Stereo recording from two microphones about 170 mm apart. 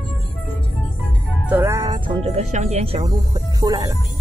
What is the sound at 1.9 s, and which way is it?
Speech, 40° right (ahead or behind).